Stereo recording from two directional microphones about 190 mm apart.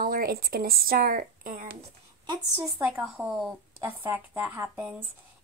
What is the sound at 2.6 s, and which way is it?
A woman's voice, 10° right (ahead or behind).